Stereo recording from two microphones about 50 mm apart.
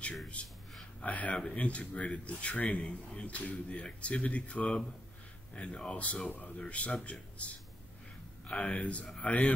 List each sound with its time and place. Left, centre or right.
0.4 s a man's voice: left
8.5 s a man's voice: left